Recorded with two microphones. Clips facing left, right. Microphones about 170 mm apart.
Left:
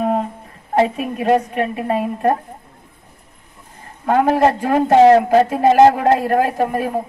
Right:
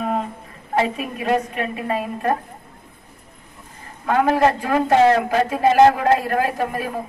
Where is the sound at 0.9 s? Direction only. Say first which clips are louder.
Left 5 dB; 50° left (ahead or behind).